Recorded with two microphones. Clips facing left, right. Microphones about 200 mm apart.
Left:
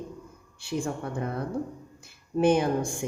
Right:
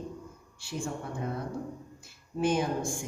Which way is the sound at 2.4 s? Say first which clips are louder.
Left 5 dB; 60° left (ahead or behind).